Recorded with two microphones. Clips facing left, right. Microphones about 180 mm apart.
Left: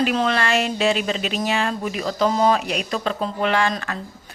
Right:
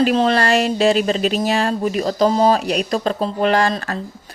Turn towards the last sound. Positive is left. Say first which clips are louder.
# right 4 dB
turn(degrees=-35)  # may be behind; listen again after turning